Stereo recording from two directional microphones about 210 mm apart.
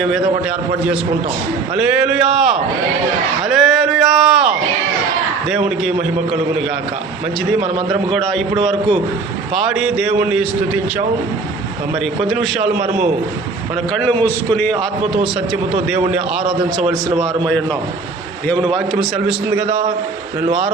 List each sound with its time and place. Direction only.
0.0 s a man's voice: centre (ahead or behind)
1.7 s a man's voice: 5° right (ahead or behind)
7.9 s a man's voice: centre (ahead or behind)
12.2 s a man's voice: centre (ahead or behind)
14.0 s a man's voice: 10° left (ahead or behind)
16.8 s a man's voice: 30° right (ahead or behind)
18.7 s a man's voice: centre (ahead or behind)